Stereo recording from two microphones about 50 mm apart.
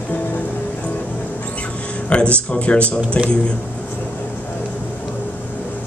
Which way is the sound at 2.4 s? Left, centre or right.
Left.